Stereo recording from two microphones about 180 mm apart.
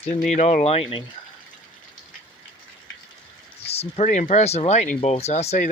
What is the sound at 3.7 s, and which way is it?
Speech, 35° left (ahead or behind).